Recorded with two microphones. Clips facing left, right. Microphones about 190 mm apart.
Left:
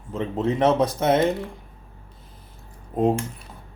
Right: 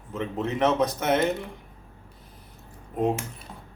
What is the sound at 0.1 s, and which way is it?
Speech, 30° left (ahead or behind).